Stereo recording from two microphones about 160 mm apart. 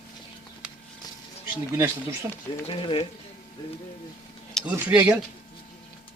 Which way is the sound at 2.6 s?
35° left (ahead or behind).